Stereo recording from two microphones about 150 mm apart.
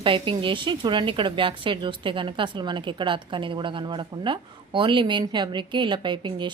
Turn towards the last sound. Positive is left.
turn(degrees=-30)  # may be behind; listen again after turning